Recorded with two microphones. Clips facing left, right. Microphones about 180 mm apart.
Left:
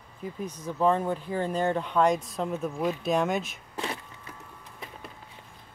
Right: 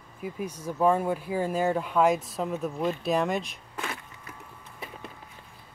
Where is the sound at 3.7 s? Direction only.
30° left (ahead or behind).